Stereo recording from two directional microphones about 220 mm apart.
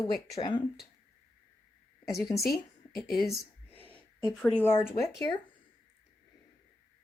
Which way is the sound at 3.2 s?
Centre (ahead or behind).